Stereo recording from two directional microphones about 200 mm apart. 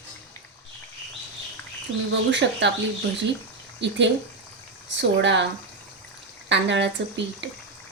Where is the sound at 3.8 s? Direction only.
65° right (ahead or behind).